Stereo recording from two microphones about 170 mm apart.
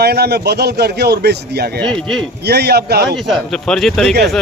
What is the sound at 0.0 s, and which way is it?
Speech, 70° right (ahead or behind).